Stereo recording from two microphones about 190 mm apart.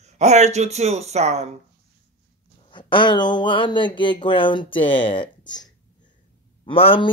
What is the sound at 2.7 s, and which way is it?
Speech, 25° left (ahead or behind).